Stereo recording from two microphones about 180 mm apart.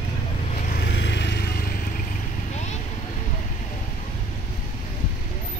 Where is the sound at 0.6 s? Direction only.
50° left (ahead or behind).